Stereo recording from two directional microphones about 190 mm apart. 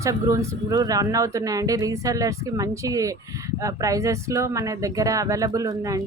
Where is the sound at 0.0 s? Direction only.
20° right (ahead or behind).